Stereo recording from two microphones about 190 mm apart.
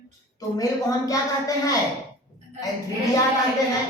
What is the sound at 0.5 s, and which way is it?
A woman's voice, 20° left (ahead or behind).